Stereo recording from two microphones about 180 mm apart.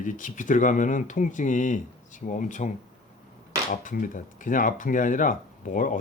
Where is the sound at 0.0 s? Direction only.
45° left (ahead or behind).